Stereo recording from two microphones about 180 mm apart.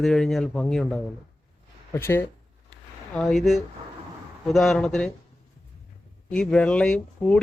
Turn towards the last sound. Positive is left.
turn(degrees=5)  # may be behind; listen again after turning